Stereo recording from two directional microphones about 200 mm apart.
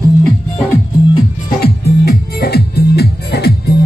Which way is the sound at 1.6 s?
50° left (ahead or behind).